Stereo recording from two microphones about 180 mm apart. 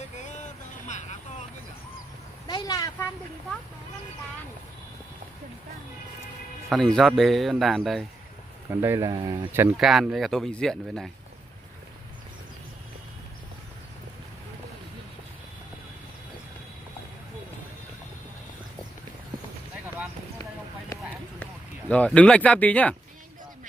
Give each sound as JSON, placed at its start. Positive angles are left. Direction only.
{"t": 0.1, "sound": "vehicle", "side_deg": 40}
{"t": 2.4, "sound": "vehicle", "side_deg": 20}
{"t": 6.7, "sound": "speech", "side_deg": 0}
{"t": 8.8, "sound": "speech", "side_deg": -15}
{"t": 20.9, "sound": "run", "side_deg": 20}
{"t": 21.4, "sound": "speech", "side_deg": 5}